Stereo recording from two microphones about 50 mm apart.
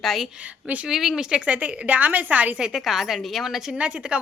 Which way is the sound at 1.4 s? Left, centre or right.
Right.